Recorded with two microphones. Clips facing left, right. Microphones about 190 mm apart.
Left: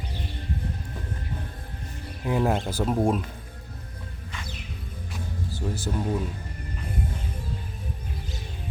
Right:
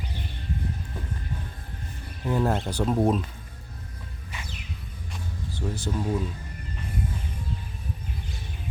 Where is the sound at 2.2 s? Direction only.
10° left (ahead or behind).